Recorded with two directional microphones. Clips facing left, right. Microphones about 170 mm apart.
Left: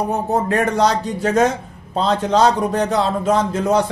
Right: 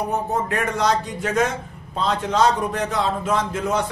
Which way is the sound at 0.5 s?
35° left (ahead or behind).